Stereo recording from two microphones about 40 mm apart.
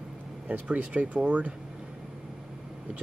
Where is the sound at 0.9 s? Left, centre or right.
Right.